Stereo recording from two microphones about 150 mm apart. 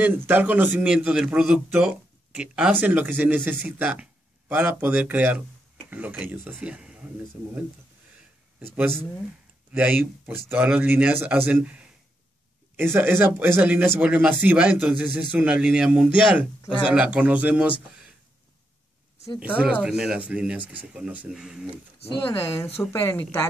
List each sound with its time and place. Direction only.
0.0 s a man's voice: 10° right (ahead or behind)
8.5 s a man's voice: 15° right (ahead or behind)
19.6 s a man's voice: 10° right (ahead or behind)
22.2 s speech: 15° left (ahead or behind)